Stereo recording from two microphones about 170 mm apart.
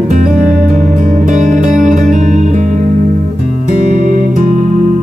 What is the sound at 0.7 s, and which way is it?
Music, 45° right (ahead or behind).